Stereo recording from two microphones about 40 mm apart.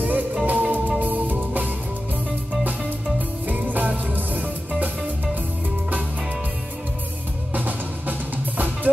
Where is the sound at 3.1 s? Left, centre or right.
Right.